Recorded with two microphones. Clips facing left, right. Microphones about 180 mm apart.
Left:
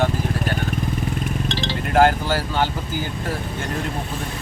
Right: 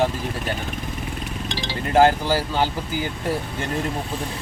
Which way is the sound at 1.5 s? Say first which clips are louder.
Left 1 dB; 10° right (ahead or behind).